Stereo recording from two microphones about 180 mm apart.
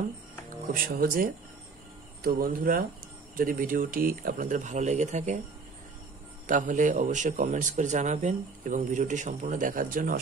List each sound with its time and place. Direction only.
0.5 s a man's voice: 50° right (ahead or behind)
6.4 s a man's voice: 45° right (ahead or behind)